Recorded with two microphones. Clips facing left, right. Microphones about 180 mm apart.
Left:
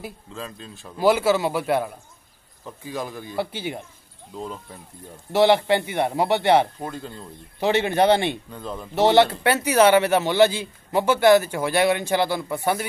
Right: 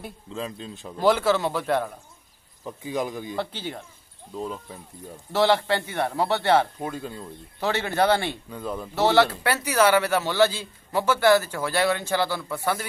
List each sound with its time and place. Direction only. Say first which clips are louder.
0.3 s a man's voice: right 3 dB; 20° right (ahead or behind)
0.9 s speech: left 2 dB; 10° left (ahead or behind)
2.6 s speech: right 3 dB; 15° right (ahead or behind)
3.3 s speech: left 8 dB; 10° left (ahead or behind)
5.3 s speech: left 4 dB; 15° left (ahead or behind)
6.8 s speech: right 1 dB; 5° right (ahead or behind)
7.6 s speech: left 4 dB; 20° left (ahead or behind)
8.5 s speech: right 2 dB; 5° right (ahead or behind)
8.9 s speech: left 3 dB; 20° left (ahead or behind)